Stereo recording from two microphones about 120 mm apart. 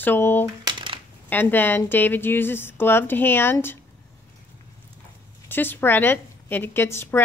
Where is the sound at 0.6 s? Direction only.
45° right (ahead or behind).